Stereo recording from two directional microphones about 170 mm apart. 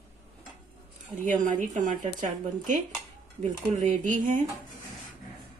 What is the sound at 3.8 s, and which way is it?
Speech, 50° right (ahead or behind).